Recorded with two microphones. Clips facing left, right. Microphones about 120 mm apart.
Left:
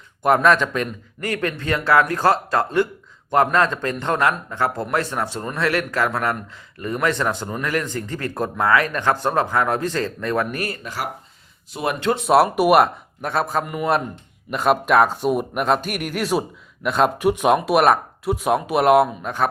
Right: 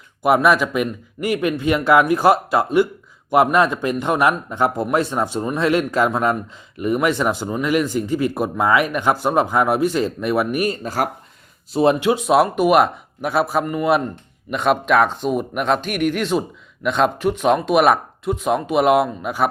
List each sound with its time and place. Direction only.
0.2 s a man's voice: 10° right (ahead or behind)
10.8 s speech: 45° right (ahead or behind)
11.7 s speech: 30° right (ahead or behind)
12.1 s speech: centre (ahead or behind)
17.7 s speech: centre (ahead or behind)